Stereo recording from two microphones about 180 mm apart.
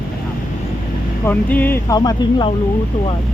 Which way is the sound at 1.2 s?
10° left (ahead or behind).